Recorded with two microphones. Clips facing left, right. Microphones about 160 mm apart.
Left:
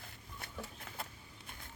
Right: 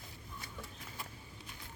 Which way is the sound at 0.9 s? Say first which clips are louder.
Left 2 dB; 65° left (ahead or behind).